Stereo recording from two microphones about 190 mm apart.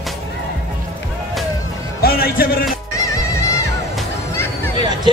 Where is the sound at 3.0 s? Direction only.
15° left (ahead or behind).